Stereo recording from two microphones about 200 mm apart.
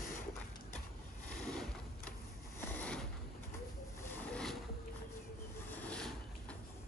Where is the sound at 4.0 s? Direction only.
5° left (ahead or behind).